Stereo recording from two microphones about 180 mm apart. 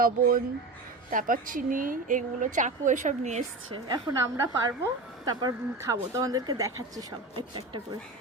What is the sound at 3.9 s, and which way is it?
Speech, 20° right (ahead or behind).